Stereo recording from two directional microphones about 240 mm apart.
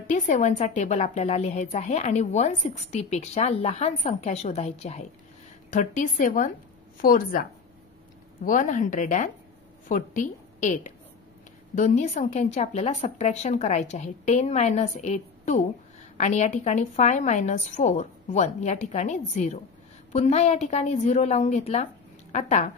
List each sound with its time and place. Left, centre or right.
0.1 s a woman's voice: left
8.5 s a woman's voice: left